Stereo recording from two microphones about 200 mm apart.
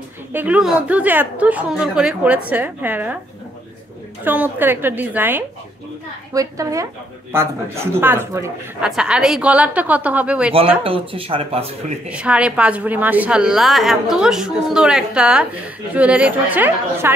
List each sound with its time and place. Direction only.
0.3 s a woman's voice: 10° right (ahead or behind)
4.2 s a woman's voice: 10° right (ahead or behind)
10.8 s speech: 25° right (ahead or behind)
12.1 s a woman's voice: 5° right (ahead or behind)